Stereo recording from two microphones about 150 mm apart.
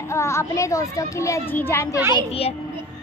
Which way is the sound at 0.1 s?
20° left (ahead or behind).